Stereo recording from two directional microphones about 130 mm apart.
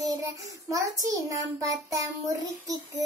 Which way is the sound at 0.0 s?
30° right (ahead or behind).